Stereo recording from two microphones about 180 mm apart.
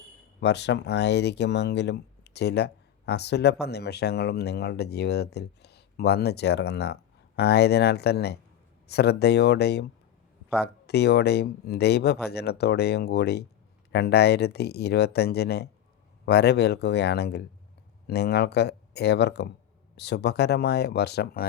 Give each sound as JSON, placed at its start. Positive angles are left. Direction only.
{"t": 0.3, "sound": "speech", "side_deg": 70}